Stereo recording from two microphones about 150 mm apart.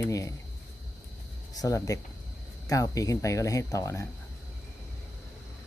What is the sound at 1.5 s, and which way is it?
Speech, 25° left (ahead or behind).